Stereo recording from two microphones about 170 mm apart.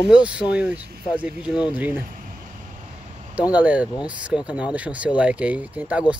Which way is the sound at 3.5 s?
10° right (ahead or behind).